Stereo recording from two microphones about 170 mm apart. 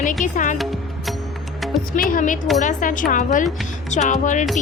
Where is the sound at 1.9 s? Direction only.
55° left (ahead or behind).